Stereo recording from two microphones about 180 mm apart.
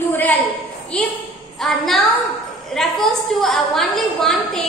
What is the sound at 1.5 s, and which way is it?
A woman's voice, centre (ahead or behind).